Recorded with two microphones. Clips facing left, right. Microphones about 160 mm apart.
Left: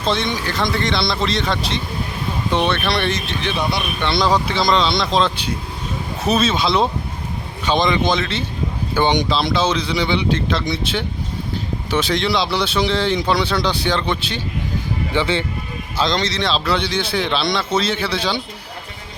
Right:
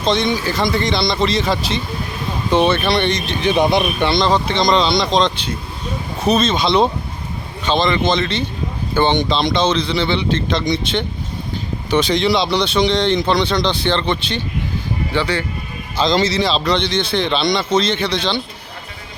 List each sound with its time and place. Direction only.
0.0 s speech: centre (ahead or behind)
3.4 s speech: 20° right (ahead or behind)
4.1 s speech: 5° left (ahead or behind)
7.6 s speech: 15° left (ahead or behind)
15.1 s speech: 20° left (ahead or behind)
16.0 s speech: centre (ahead or behind)